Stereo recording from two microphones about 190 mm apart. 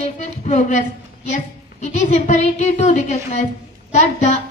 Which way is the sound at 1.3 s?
40° left (ahead or behind).